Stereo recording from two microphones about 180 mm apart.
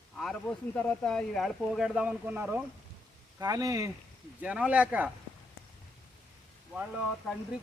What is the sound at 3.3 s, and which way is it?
Speech, 20° right (ahead or behind).